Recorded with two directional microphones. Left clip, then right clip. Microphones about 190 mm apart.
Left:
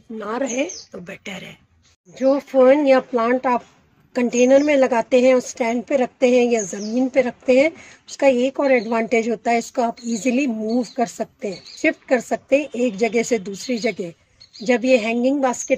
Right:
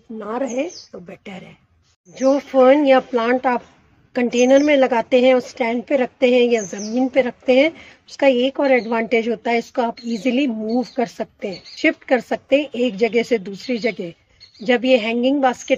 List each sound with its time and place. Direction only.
0.2 s a woman's voice: 10° right (ahead or behind)